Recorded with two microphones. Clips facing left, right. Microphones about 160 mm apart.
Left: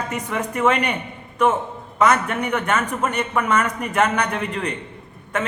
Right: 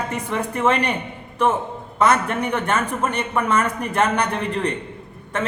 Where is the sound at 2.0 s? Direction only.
30° right (ahead or behind).